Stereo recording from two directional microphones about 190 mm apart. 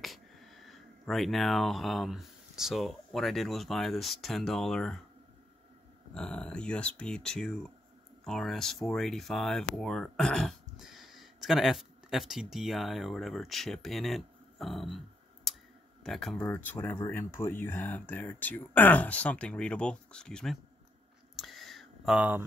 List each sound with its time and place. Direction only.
0.0 s speech: centre (ahead or behind)
6.1 s speech: 5° left (ahead or behind)
21.4 s a sound: centre (ahead or behind)